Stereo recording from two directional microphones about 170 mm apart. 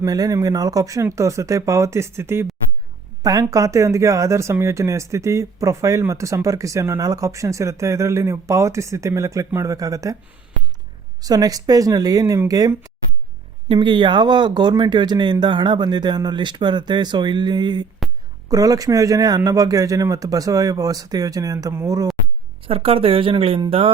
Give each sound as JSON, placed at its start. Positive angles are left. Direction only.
{"t": 0.0, "sound": "speech", "side_deg": -20}
{"t": 11.2, "sound": "speech", "side_deg": -20}
{"t": 22.6, "sound": "speech", "side_deg": -35}